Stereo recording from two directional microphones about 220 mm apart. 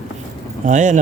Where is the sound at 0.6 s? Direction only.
35° right (ahead or behind).